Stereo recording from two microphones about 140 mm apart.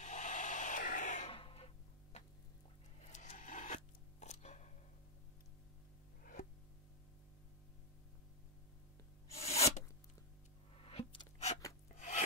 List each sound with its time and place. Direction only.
0.0 s a sound: 60° left (ahead or behind)
1.3 s a sound: 40° left (ahead or behind)
3.0 s scissors: 55° left (ahead or behind)
9.3 s filing: 50° left (ahead or behind)
10.8 s music: 40° left (ahead or behind)
11.9 s filing: 60° left (ahead or behind)